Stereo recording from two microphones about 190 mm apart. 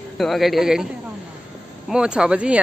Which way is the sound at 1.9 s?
5° right (ahead or behind).